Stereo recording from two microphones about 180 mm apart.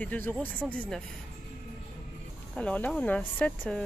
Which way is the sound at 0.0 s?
10° left (ahead or behind).